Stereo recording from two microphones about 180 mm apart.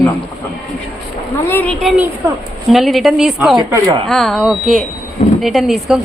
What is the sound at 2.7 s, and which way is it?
A woman's voice, centre (ahead or behind).